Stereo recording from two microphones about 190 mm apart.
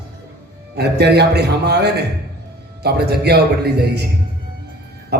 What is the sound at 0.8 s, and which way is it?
A man's voice, 60° right (ahead or behind).